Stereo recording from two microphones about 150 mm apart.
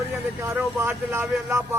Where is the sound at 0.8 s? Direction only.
15° right (ahead or behind).